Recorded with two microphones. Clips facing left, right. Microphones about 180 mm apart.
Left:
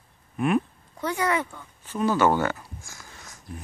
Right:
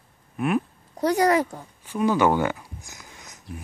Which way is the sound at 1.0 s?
40° right (ahead or behind).